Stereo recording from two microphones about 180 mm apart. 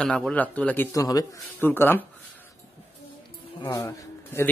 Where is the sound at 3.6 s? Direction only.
15° left (ahead or behind).